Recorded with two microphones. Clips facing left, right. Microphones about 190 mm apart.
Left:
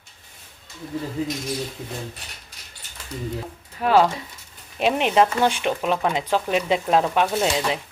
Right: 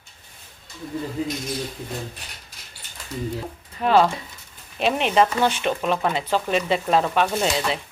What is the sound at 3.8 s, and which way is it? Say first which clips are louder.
A woman's voice: even; 10° left (ahead or behind).